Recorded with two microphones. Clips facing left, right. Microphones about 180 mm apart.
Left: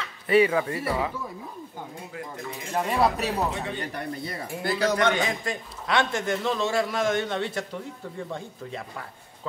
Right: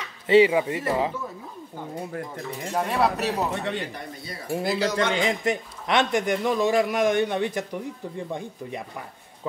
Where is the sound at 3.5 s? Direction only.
75° right (ahead or behind).